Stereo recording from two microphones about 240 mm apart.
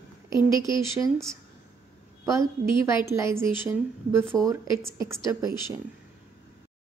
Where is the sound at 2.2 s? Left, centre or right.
Centre.